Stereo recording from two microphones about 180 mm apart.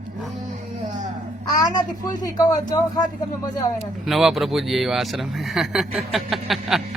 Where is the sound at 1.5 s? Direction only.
25° left (ahead or behind).